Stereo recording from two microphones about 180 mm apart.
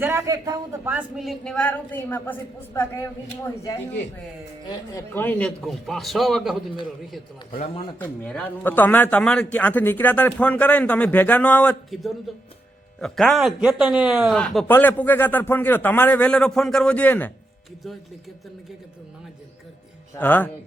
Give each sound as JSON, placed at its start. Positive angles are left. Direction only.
{"t": 0.0, "sound": "a man's voice", "side_deg": -15}
{"t": 4.9, "sound": "speech", "side_deg": 10}
{"t": 7.9, "sound": "a man's voice", "side_deg": 10}
{"t": 20.1, "sound": "a man's voice", "side_deg": 10}